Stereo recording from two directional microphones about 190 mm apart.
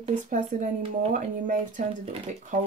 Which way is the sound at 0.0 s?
40° right (ahead or behind).